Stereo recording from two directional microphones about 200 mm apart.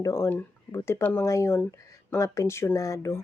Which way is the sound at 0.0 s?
15° left (ahead or behind).